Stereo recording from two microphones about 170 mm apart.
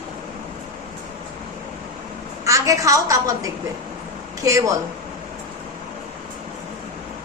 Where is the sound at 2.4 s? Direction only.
20° right (ahead or behind).